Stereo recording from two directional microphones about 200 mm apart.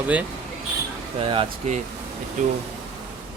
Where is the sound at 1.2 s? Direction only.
25° right (ahead or behind).